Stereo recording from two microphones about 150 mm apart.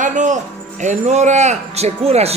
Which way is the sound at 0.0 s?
55° right (ahead or behind).